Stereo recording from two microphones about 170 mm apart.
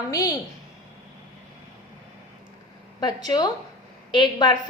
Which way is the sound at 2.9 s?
25° left (ahead or behind).